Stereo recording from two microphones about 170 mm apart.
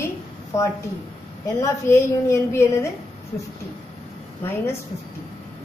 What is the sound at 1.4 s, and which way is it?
A woman's voice, 15° left (ahead or behind).